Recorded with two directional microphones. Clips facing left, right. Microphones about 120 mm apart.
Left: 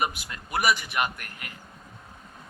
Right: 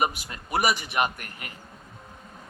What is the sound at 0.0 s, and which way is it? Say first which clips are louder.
Speech: right 2 dB; 30° right (ahead or behind).